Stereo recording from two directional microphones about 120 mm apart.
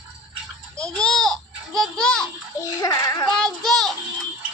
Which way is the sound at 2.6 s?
30° left (ahead or behind).